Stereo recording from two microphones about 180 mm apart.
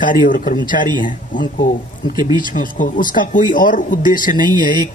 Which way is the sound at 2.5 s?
50° left (ahead or behind).